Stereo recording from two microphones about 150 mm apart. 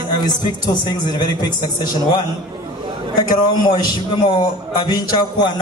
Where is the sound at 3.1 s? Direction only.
30° left (ahead or behind).